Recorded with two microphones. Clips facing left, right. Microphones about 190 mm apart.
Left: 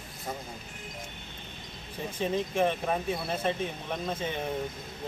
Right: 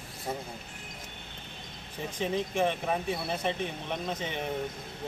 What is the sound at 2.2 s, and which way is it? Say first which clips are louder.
Speech: left 1 dB; 15° right (ahead or behind).